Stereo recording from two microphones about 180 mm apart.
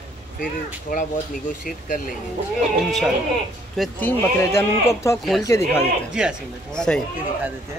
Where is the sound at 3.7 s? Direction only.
Centre (ahead or behind).